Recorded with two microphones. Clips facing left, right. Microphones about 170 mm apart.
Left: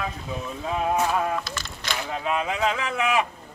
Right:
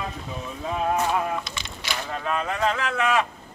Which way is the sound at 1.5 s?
Centre (ahead or behind).